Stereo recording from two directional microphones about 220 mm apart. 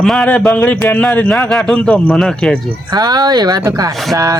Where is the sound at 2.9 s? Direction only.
20° right (ahead or behind).